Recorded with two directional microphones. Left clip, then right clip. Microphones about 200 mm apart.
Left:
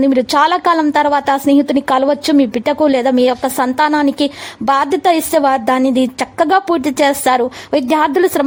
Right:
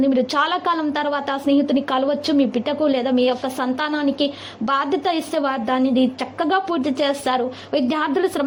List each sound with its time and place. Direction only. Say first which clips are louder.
0.0 s a woman's voice: left 7 dB; 40° left (ahead or behind)